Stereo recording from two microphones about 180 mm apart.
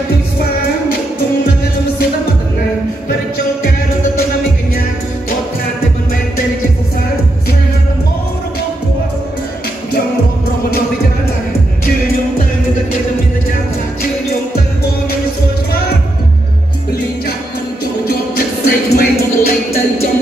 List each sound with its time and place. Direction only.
18.7 s music: 60° left (ahead or behind)